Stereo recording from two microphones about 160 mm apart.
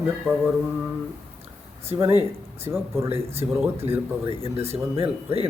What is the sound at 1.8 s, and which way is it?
Mantra, 15° right (ahead or behind).